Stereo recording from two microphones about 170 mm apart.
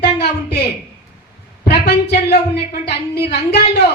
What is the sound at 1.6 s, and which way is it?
Speech, 75° left (ahead or behind).